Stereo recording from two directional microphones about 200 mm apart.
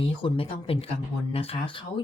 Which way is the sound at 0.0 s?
25° left (ahead or behind).